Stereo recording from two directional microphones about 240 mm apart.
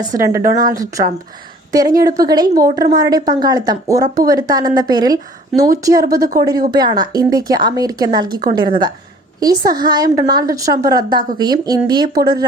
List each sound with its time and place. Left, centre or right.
0.1 s a woman's voice: centre
1.7 s a woman's voice: centre
2.4 s a woman's voice: right
2.9 s a woman's voice: centre